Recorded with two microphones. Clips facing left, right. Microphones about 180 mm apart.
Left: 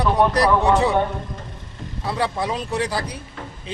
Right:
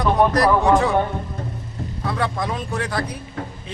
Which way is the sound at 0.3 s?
30° left (ahead or behind).